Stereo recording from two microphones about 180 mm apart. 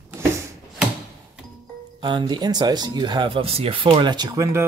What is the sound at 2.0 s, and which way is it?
Speech, 25° right (ahead or behind).